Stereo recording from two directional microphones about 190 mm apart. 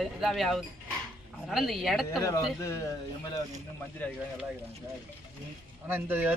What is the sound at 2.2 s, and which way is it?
Speech, 15° left (ahead or behind).